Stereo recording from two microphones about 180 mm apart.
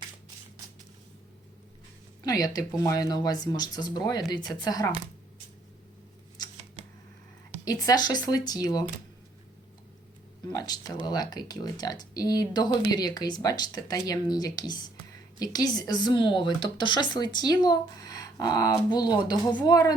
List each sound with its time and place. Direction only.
2.2 s speech: 20° left (ahead or behind)
6.8 s a sound: 30° right (ahead or behind)
7.6 s speech: 20° left (ahead or behind)
10.5 s speech: 20° left (ahead or behind)